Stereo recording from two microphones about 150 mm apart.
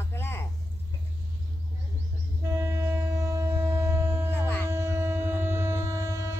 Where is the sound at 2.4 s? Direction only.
20° right (ahead or behind).